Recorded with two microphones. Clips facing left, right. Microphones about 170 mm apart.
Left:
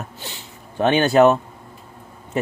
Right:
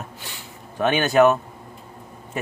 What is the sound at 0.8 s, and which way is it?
Speech, 30° left (ahead or behind).